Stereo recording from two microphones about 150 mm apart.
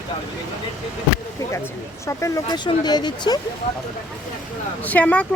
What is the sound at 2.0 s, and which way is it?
Speech, 20° left (ahead or behind).